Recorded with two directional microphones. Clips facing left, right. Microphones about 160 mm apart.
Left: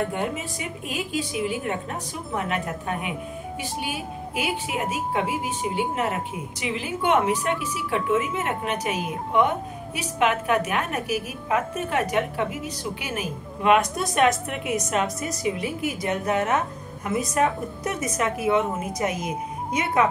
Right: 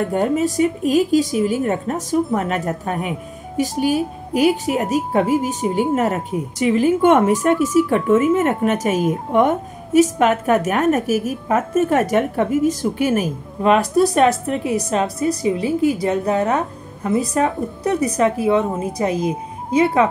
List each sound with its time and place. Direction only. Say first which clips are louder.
0.1 s a woman's voice: right 10 dB; 40° right (ahead or behind)